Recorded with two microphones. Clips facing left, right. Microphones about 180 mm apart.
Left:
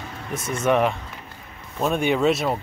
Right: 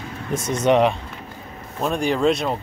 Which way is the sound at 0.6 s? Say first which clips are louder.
Right 3 dB; 20° right (ahead or behind).